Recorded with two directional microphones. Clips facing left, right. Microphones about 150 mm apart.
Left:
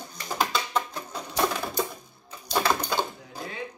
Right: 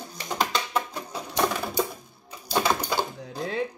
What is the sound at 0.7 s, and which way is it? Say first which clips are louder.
Music: right 1 dB; 10° right (ahead or behind).